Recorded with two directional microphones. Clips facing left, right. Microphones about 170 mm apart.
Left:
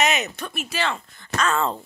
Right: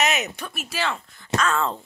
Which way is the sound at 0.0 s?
Centre (ahead or behind).